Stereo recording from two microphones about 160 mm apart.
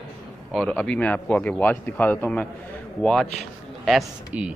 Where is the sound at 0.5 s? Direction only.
5° left (ahead or behind).